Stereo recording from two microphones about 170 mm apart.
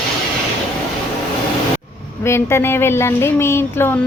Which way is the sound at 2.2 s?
15° left (ahead or behind).